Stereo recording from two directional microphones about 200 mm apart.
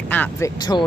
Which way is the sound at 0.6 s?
20° left (ahead or behind).